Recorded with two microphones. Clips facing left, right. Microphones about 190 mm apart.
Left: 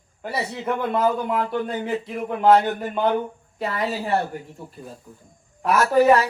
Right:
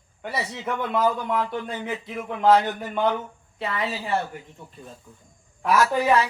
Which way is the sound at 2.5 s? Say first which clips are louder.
Left 2 dB; 35° left (ahead or behind).